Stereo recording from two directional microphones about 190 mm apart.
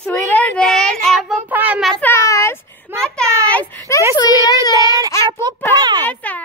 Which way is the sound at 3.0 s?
5° left (ahead or behind).